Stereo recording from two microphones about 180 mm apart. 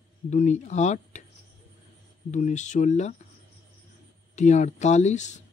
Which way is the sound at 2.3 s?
40° left (ahead or behind).